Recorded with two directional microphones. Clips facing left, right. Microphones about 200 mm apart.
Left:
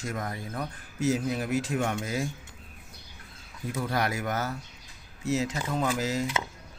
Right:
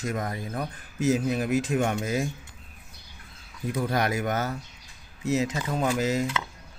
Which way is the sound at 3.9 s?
20° right (ahead or behind).